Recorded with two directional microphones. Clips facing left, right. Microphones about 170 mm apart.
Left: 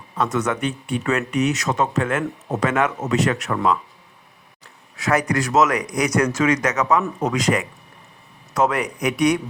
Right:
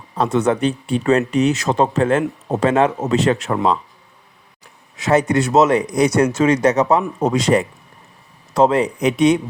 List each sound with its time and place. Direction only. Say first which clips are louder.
0.2 s speech: right 5 dB; 30° right (ahead or behind)